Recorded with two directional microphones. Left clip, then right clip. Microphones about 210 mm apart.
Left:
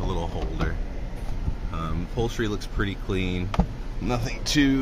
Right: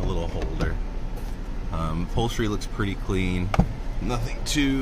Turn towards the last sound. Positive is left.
turn(degrees=15)  # may be behind; listen again after turning